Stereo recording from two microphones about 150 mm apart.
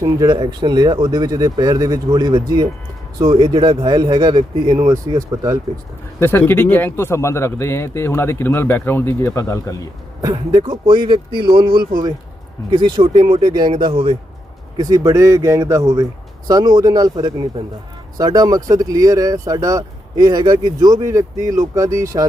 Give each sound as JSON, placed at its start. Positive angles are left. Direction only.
{"t": 0.0, "sound": "speech", "side_deg": -25}
{"t": 6.1, "sound": "speech", "side_deg": 15}
{"t": 10.2, "sound": "speech", "side_deg": -25}
{"t": 14.8, "sound": "speech", "side_deg": -25}